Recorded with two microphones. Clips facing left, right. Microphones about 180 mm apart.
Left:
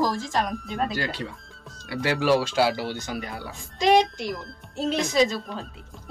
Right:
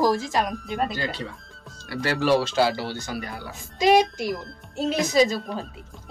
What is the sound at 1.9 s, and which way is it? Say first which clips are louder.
Speech: even; 15° left (ahead or behind).